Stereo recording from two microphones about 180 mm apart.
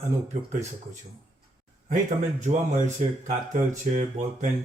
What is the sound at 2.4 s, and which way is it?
Speech, 45° right (ahead or behind).